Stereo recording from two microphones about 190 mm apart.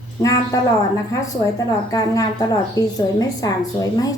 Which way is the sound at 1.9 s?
20° left (ahead or behind).